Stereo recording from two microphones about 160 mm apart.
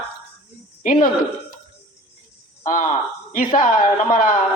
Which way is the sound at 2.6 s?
45° left (ahead or behind).